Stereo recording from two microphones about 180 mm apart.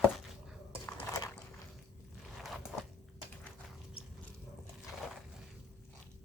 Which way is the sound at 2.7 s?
Centre (ahead or behind).